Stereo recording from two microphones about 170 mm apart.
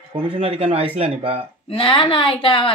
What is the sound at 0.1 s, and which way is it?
Speech, 35° right (ahead or behind).